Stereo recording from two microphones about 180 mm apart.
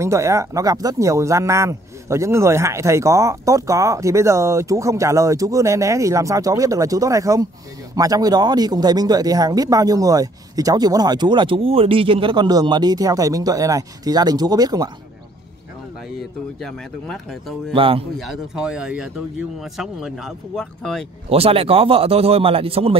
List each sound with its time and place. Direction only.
0.0 s speech: 15° right (ahead or behind)
16.2 s speech: centre (ahead or behind)
17.7 s speech: 30° right (ahead or behind)
18.1 s speech: centre (ahead or behind)
21.3 s speech: 35° right (ahead or behind)